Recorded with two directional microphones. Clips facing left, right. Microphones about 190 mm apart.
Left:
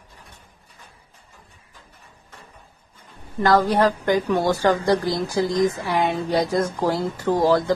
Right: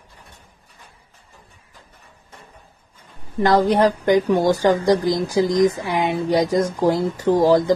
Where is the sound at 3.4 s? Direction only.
20° right (ahead or behind).